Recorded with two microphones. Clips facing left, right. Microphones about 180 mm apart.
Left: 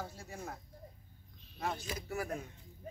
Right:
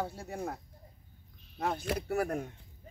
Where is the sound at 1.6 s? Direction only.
55° right (ahead or behind).